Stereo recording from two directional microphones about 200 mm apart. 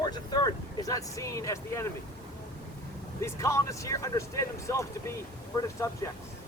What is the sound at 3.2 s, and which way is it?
Speech, 15° left (ahead or behind).